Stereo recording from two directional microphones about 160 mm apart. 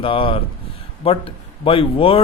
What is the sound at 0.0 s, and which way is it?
Speech, 35° left (ahead or behind).